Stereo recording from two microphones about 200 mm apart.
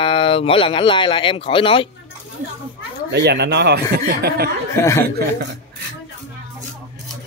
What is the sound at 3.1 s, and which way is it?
Speech, 60° right (ahead or behind).